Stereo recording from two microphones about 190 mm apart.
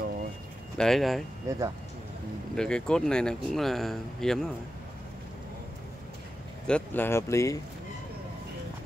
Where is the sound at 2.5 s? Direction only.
5° left (ahead or behind).